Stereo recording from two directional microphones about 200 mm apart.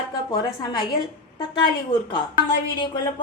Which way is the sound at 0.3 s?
20° left (ahead or behind).